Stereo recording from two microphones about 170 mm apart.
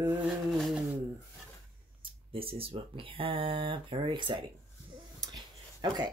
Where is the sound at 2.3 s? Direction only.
35° right (ahead or behind).